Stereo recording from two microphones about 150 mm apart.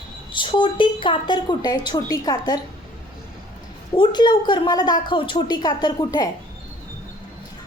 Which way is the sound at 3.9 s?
30° left (ahead or behind).